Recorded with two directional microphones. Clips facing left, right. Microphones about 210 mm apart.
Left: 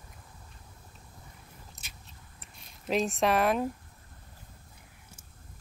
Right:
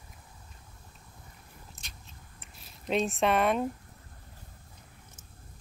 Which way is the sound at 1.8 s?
5° left (ahead or behind).